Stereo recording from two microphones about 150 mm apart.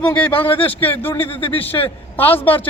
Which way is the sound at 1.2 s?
35° left (ahead or behind).